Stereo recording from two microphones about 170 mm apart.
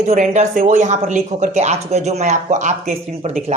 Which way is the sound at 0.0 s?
40° right (ahead or behind).